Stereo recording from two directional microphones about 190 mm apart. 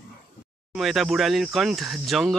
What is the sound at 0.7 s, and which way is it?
Speech, centre (ahead or behind).